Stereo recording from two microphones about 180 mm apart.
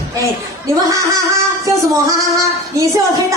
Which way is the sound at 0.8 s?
15° right (ahead or behind).